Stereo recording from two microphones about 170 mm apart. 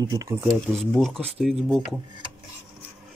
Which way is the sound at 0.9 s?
5° left (ahead or behind).